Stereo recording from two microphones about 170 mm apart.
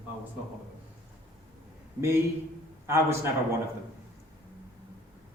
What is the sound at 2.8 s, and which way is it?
Speech, 15° right (ahead or behind).